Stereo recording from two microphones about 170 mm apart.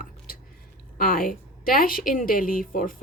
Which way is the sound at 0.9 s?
55° left (ahead or behind).